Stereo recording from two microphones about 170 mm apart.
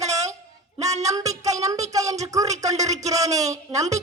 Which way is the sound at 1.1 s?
20° right (ahead or behind).